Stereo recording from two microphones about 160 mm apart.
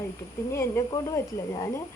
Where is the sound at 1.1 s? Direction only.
20° left (ahead or behind).